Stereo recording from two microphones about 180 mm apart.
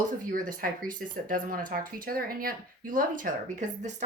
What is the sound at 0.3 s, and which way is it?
Speech, 50° right (ahead or behind).